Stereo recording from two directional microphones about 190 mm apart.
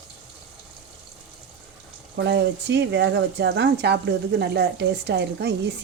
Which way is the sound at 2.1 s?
65° right (ahead or behind).